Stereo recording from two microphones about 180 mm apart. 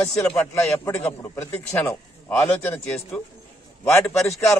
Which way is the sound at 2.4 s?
5° left (ahead or behind).